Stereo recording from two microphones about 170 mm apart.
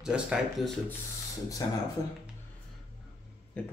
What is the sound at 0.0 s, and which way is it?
Speech, 5° right (ahead or behind).